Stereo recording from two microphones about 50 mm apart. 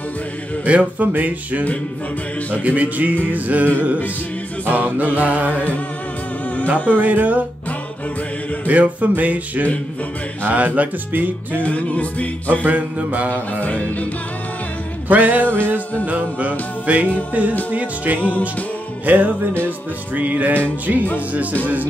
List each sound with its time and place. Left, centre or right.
0.7 s music: right
2.6 s music: right
4.6 s music: right
5.5 s humming: left
7.0 s music: right
8.6 s music: right
11.6 s music: left
12.6 s music: right
13.6 s music: left
15.0 s music: right